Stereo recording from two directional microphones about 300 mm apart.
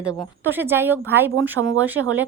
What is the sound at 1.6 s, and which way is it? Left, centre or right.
Speech, right.